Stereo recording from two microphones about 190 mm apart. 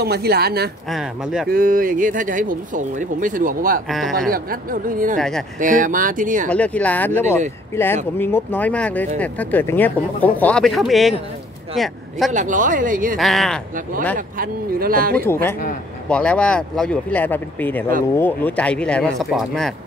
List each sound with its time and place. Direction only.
0.0 s speech: 55° right (ahead or behind)
0.8 s speech: centre (ahead or behind)
1.5 s speech: 45° right (ahead or behind)
3.9 s speech: centre (ahead or behind)
4.3 s speech: 50° right (ahead or behind)
6.5 s speech: 5° left (ahead or behind)
12.3 s speech: 40° right (ahead or behind)
13.2 s speech: centre (ahead or behind)
14.1 s speech: 45° right (ahead or behind)
16.1 s speech: 5° left (ahead or behind)